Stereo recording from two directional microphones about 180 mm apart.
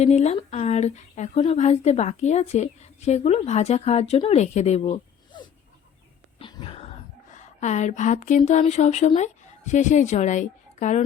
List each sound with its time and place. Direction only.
0.0 s a woman's voice: 40° left (ahead or behind)
6.4 s whispering: 30° left (ahead or behind)
7.3 s speech: 40° left (ahead or behind)